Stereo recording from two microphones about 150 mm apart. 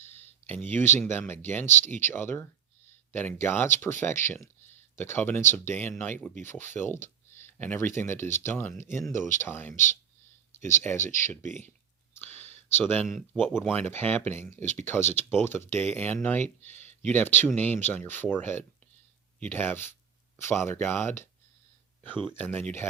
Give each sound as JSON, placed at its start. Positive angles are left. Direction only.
{"t": 0.4, "sound": "speech", "side_deg": 10}
{"t": 12.2, "sound": "clicking", "side_deg": 15}
{"t": 12.9, "sound": "speech", "side_deg": 15}
{"t": 13.1, "sound": "speech", "side_deg": 0}
{"t": 13.6, "sound": "speech", "side_deg": 10}
{"t": 22.4, "sound": "speech", "side_deg": 10}